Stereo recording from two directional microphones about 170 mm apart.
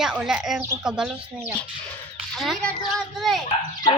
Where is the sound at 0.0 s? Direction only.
5° right (ahead or behind).